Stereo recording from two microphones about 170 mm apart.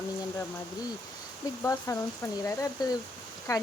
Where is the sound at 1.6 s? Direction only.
15° left (ahead or behind).